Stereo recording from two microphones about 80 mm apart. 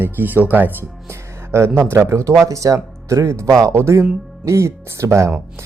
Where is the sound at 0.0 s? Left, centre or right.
Right.